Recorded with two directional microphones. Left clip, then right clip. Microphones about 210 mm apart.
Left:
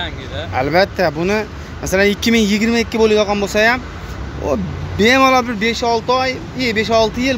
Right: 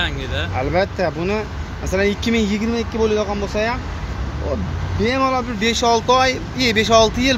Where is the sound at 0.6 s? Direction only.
20° left (ahead or behind).